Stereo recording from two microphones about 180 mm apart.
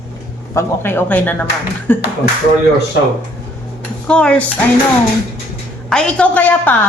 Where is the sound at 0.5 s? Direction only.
15° left (ahead or behind).